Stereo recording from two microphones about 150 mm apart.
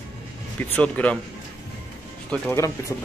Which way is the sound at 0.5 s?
10° left (ahead or behind).